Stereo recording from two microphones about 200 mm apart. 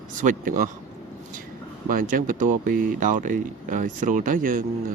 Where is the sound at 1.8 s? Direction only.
45° right (ahead or behind).